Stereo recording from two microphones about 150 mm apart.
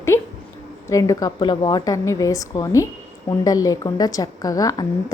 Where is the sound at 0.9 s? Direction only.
20° left (ahead or behind).